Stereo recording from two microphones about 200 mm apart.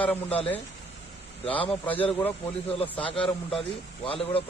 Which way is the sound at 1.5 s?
25° left (ahead or behind).